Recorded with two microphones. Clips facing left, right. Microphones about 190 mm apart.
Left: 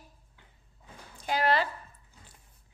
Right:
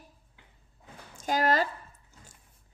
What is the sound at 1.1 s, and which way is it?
Speech, 45° right (ahead or behind).